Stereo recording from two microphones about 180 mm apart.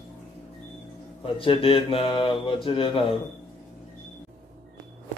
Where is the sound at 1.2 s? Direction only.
30° left (ahead or behind).